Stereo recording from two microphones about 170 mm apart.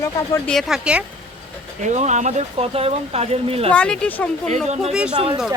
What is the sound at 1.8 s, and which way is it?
Speech, 45° right (ahead or behind).